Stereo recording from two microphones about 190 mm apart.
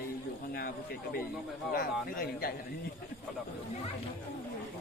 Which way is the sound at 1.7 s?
50° left (ahead or behind).